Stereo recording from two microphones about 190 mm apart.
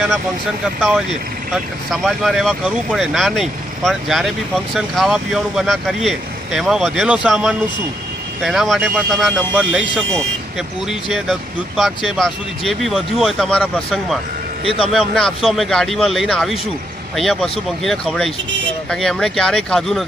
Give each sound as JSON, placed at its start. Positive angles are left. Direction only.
{"t": 0.7, "sound": "speech", "side_deg": 0}
{"t": 14.6, "sound": "a man's voice", "side_deg": 30}
{"t": 14.9, "sound": "speech", "side_deg": 0}